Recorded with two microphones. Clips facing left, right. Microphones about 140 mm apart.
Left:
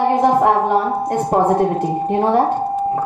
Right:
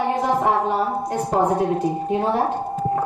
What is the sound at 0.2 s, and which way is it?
A woman's voice, 60° left (ahead or behind).